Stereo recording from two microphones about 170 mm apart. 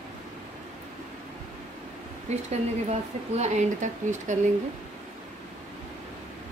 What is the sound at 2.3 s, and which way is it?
Speech, 40° right (ahead or behind).